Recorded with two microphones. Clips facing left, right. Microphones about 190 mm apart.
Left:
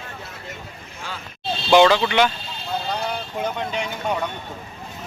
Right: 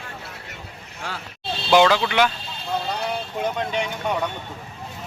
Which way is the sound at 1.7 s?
5° right (ahead or behind).